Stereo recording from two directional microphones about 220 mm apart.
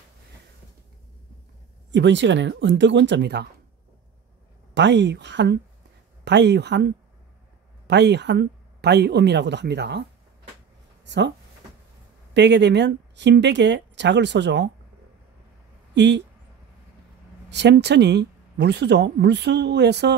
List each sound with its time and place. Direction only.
1.9 s speech: 55° right (ahead or behind)
4.7 s speech: 50° right (ahead or behind)
11.1 s speech: 50° right (ahead or behind)
12.4 s speech: 50° right (ahead or behind)
15.9 s speech: 50° right (ahead or behind)
17.5 s speech: 50° right (ahead or behind)